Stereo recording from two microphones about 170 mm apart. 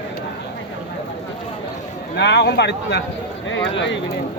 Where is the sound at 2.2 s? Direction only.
90° left.